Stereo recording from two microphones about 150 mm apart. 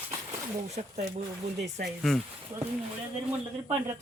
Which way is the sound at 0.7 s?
45° right (ahead or behind).